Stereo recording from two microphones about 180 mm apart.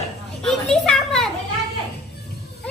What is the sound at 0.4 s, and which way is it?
Children playing, 5° left (ahead or behind).